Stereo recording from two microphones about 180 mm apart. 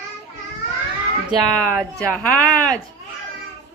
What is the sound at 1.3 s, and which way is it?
Speech, 5° left (ahead or behind).